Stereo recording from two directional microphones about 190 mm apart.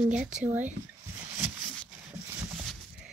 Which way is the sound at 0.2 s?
5° right (ahead or behind).